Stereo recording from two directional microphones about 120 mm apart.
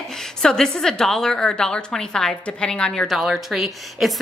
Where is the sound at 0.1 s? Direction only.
5° left (ahead or behind).